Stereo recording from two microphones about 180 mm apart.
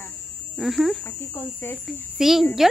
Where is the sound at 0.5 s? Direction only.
Centre (ahead or behind).